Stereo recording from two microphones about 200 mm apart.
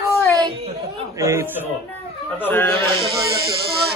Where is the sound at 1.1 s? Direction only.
15° right (ahead or behind).